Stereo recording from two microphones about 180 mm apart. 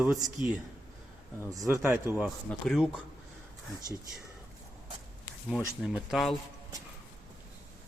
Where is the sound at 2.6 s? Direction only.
Centre (ahead or behind).